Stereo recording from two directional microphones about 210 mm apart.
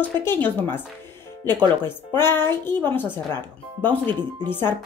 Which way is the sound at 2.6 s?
10° left (ahead or behind).